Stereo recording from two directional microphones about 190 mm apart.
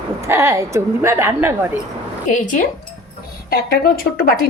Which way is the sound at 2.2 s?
45° left (ahead or behind).